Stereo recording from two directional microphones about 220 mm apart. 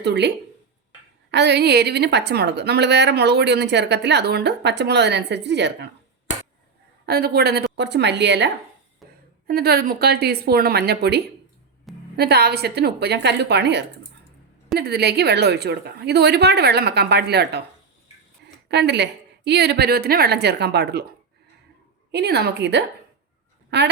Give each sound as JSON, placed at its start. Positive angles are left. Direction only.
{"t": 0.0, "sound": "a woman's voice", "side_deg": -50}
{"t": 7.0, "sound": "a woman's voice", "side_deg": -45}
{"t": 9.5, "sound": "a woman's voice", "side_deg": -45}
{"t": 18.7, "sound": "a woman's voice", "side_deg": -50}
{"t": 22.1, "sound": "a woman's voice", "side_deg": -50}